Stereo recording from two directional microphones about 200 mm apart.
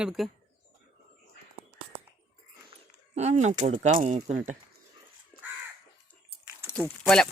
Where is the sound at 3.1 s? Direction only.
35° right (ahead or behind).